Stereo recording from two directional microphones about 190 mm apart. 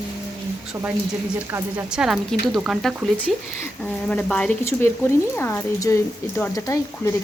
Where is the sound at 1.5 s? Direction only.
5° right (ahead or behind).